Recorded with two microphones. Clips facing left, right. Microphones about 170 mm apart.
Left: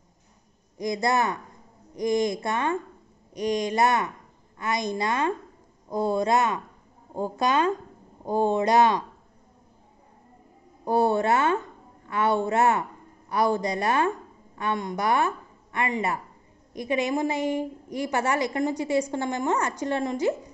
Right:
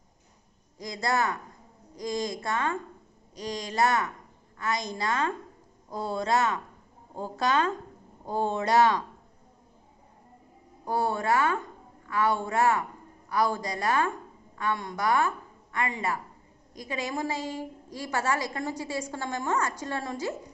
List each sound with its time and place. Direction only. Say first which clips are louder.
0.7 s a woman's voice: left 4 dB; 20° left (ahead or behind)
10.9 s a woman's voice: left 5 dB; 25° left (ahead or behind)